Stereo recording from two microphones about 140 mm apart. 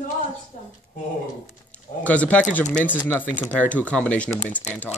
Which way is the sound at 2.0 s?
10° left (ahead or behind).